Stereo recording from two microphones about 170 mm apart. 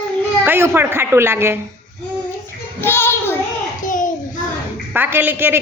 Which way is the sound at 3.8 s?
50° left (ahead or behind).